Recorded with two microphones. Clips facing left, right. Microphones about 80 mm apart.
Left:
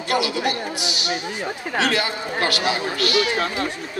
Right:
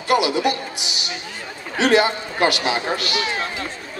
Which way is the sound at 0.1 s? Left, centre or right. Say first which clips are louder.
Right 4 dB; right.